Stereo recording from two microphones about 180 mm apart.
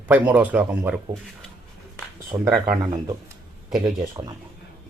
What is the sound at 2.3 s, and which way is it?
Speech, 15° right (ahead or behind).